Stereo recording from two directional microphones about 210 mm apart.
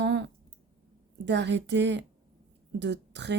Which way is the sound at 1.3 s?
55° right (ahead or behind).